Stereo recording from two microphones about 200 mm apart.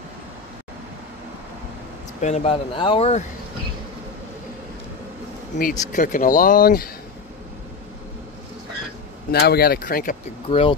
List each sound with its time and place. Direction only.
2.2 s speech: 30° left (ahead or behind)
5.6 s speech: 40° left (ahead or behind)
9.3 s speech: 50° left (ahead or behind)
10.5 s speech: 25° left (ahead or behind)